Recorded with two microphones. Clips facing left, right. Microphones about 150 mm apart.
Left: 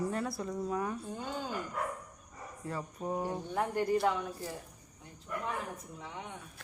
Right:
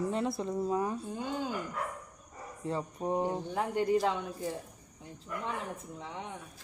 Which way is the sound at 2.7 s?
25° right (ahead or behind).